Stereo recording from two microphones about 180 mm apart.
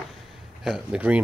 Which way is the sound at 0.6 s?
5° right (ahead or behind).